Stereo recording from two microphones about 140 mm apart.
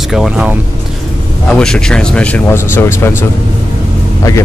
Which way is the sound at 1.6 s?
5° left (ahead or behind).